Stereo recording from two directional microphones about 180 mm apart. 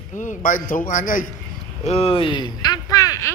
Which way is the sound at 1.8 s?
35° left (ahead or behind).